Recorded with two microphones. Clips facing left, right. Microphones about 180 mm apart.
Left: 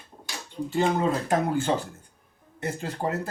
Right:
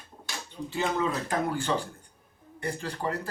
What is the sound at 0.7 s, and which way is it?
Speech, 40° left (ahead or behind).